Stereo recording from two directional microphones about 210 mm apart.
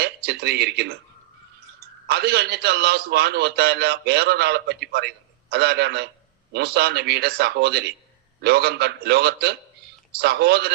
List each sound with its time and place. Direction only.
0.0 s speech: 50° right (ahead or behind)
2.0 s a man's voice: 50° right (ahead or behind)